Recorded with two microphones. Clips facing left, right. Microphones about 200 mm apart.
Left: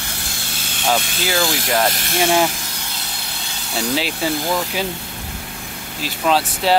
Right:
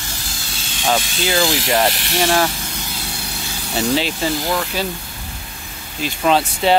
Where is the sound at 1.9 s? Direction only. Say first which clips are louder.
Even; 45° left (ahead or behind).